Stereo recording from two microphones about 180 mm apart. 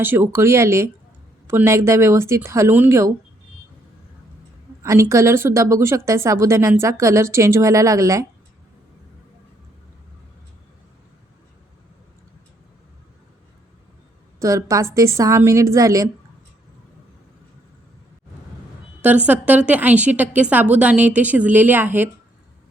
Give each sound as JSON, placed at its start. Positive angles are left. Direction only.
{"t": 0.0, "sound": "speech", "side_deg": -10}
{"t": 4.8, "sound": "speech", "side_deg": -15}
{"t": 14.3, "sound": "speech", "side_deg": -15}
{"t": 19.0, "sound": "speech", "side_deg": -10}